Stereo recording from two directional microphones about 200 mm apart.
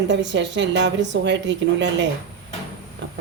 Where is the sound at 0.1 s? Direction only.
60° right (ahead or behind).